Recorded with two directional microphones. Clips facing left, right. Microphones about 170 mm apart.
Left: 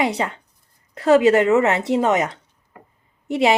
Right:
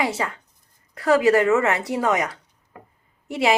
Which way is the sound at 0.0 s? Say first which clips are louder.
Left 3 dB; 20° left (ahead or behind).